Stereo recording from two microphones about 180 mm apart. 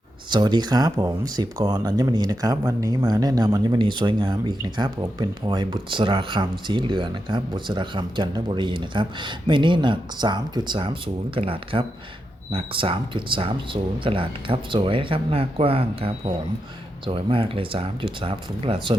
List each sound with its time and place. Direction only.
0.3 s speech: 25° right (ahead or behind)